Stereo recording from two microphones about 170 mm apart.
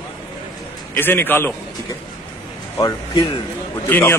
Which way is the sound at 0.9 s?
10° left (ahead or behind).